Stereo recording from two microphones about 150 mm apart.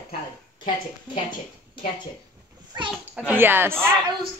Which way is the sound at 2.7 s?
30° right (ahead or behind).